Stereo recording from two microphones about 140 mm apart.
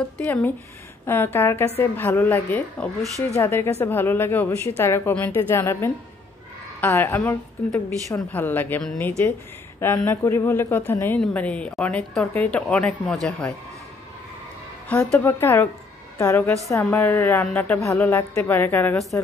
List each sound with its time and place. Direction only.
0.2 s speech: 10° left (ahead or behind)
14.9 s a woman's voice: 5° left (ahead or behind)